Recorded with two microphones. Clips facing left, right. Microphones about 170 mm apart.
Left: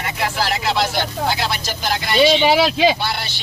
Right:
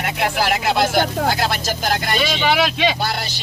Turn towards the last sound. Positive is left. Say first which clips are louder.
# right 1 dB
turn(degrees=-40)  # may be behind; listen again after turning